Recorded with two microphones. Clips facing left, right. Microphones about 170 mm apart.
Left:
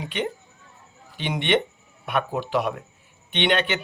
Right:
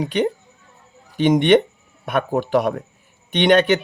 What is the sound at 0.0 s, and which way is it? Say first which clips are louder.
Speech: right 8 dB; 40° right (ahead or behind).